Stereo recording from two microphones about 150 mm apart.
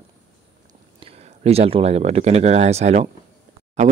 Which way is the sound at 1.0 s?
40° right (ahead or behind).